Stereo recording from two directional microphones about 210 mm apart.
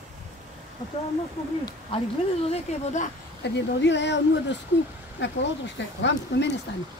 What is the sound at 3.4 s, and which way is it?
Speech, 55° left (ahead or behind).